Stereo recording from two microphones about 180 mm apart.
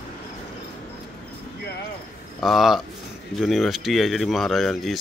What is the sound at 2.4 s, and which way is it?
Speech, centre (ahead or behind).